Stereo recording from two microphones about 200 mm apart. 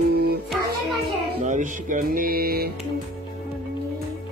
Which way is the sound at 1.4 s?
40° right (ahead or behind).